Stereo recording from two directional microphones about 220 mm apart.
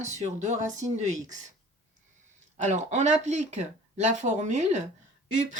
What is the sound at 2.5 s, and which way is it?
Speech, 30° right (ahead or behind).